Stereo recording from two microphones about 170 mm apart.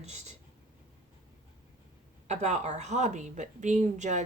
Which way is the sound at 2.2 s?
40° right (ahead or behind).